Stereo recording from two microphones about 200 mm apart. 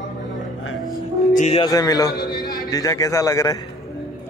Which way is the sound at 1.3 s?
35° left (ahead or behind).